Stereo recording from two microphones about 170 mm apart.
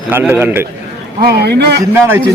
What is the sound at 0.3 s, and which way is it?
Speech, 15° right (ahead or behind).